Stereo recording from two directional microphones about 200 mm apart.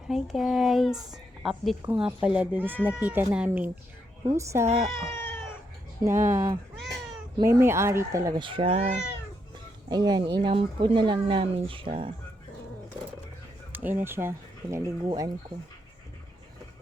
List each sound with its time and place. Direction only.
0.1 s a woman's voice: centre (ahead or behind)
4.9 s cat: 15° left (ahead or behind)
6.0 s speech: 15° right (ahead or behind); by 9.0 s 35° right (ahead or behind)
9.9 s speech: 20° right (ahead or behind)
13.7 s speech: 10° right (ahead or behind)